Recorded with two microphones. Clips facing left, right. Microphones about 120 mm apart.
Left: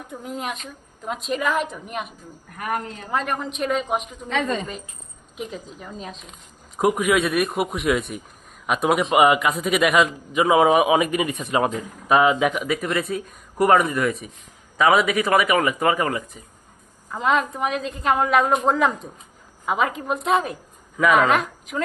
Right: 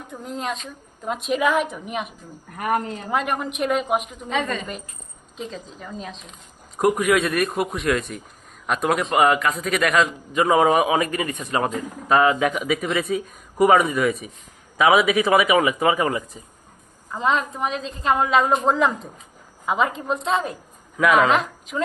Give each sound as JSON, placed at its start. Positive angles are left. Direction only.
{"t": 0.1, "sound": "a man's voice", "side_deg": 10}
{"t": 1.0, "sound": "speech", "side_deg": 0}
{"t": 2.6, "sound": "a woman's voice", "side_deg": -35}
{"t": 3.1, "sound": "speech", "side_deg": -5}
{"t": 5.4, "sound": "a man's voice", "side_deg": 10}
{"t": 17.1, "sound": "speech", "side_deg": 0}